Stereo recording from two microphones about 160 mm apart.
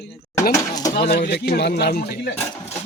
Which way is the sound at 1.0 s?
85° left.